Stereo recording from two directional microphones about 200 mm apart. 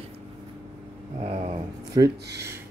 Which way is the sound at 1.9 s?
15° right (ahead or behind).